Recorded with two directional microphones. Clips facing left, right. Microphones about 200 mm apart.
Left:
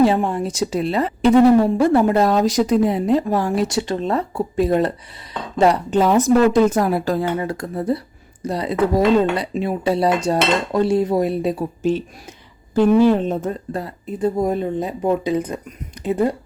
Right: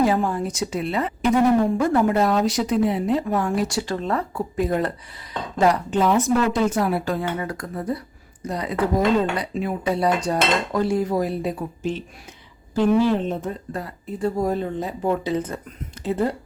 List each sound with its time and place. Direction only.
0.0 s speech: 25° left (ahead or behind)
7.3 s dishes: 25° left (ahead or behind)
8.4 s speech: 30° left (ahead or behind)
8.7 s speech: 5° left (ahead or behind)
9.4 s dishes: 25° left (ahead or behind)
12.7 s speech: 50° left (ahead or behind)
13.7 s dishes: 20° left (ahead or behind)
16.0 s speech: 15° left (ahead or behind)